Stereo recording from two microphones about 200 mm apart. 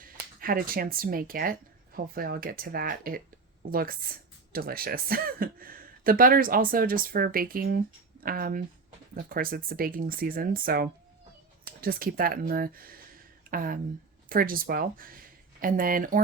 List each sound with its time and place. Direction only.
0.0 s speech: 45° right (ahead or behind)